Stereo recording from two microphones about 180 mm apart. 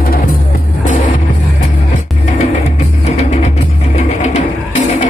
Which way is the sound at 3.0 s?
40° left (ahead or behind).